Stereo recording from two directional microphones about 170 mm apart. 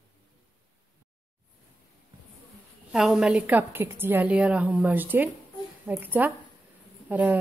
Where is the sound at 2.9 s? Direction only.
5° right (ahead or behind).